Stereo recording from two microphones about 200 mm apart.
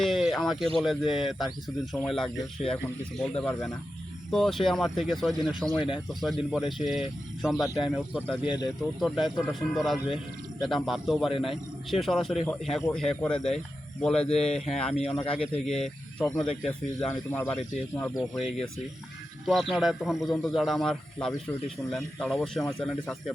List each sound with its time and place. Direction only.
0.0 s a sound: centre (ahead or behind)
0.8 s a man's voice: centre (ahead or behind)
14.3 s speech: 30° left (ahead or behind)
14.6 s a man's voice: centre (ahead or behind)
15.1 s speech: 20° left (ahead or behind)
15.4 s a man's voice: 5° left (ahead or behind)